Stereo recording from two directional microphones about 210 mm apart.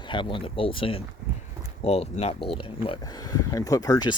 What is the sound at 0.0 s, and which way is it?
Speech, 25° left (ahead or behind).